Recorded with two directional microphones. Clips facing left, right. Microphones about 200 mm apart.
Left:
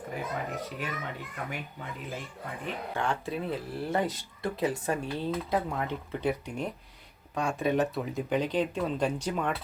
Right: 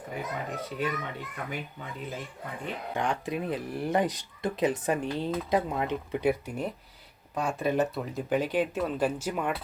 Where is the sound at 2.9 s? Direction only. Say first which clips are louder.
Right 2 dB; 15° right (ahead or behind).